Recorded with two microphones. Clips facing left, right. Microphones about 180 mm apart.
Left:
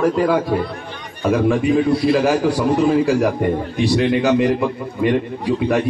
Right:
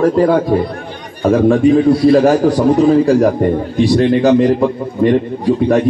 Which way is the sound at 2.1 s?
40° right (ahead or behind).